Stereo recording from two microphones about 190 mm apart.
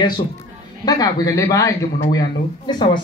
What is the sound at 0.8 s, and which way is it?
Speech, 20° left (ahead or behind).